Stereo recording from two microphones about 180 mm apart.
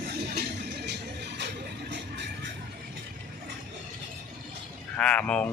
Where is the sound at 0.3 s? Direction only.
65° right (ahead or behind).